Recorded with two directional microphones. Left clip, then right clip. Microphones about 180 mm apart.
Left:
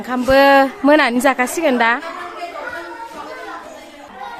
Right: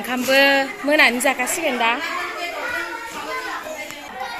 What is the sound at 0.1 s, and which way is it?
A woman's voice, 35° left (ahead or behind).